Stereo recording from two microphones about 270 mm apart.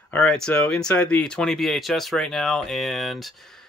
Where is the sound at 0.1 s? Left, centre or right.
Centre.